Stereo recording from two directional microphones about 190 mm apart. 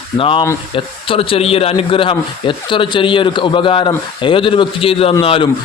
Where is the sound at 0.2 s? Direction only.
30° left (ahead or behind).